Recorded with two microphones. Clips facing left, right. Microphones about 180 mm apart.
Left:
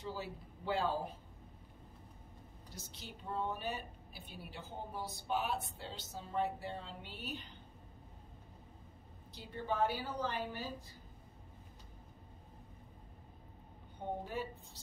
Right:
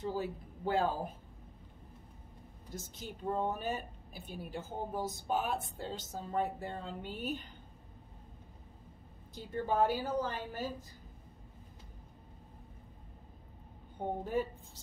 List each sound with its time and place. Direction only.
0.0 s a woman's voice: 50° right (ahead or behind)
2.7 s a woman's voice: 50° right (ahead or behind)
9.3 s a woman's voice: 45° right (ahead or behind)